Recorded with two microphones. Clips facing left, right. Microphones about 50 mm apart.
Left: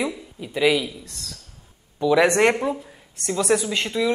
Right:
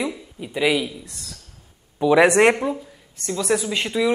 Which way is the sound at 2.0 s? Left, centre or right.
Centre.